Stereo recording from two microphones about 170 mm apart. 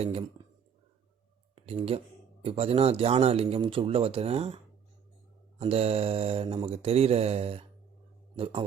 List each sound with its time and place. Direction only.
0.0 s speech: 35° right (ahead or behind)
1.5 s speech: 35° right (ahead or behind)